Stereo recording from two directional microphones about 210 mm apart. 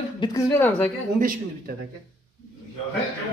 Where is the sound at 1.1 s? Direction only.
40° right (ahead or behind).